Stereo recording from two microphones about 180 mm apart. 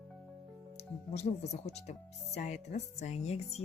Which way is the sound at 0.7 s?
35° left (ahead or behind).